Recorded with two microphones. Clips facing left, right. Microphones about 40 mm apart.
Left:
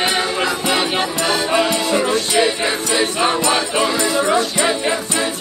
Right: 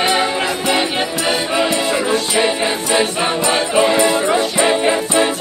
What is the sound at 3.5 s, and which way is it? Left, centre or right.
Music, right.